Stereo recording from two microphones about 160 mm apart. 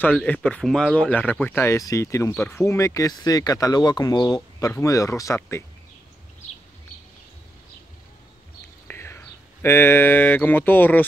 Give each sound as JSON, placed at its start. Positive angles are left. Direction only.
{"t": 0.0, "sound": "speech", "side_deg": 10}
{"t": 8.8, "sound": "speech", "side_deg": 15}